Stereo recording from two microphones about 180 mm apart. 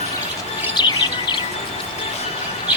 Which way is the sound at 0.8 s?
25° left (ahead or behind).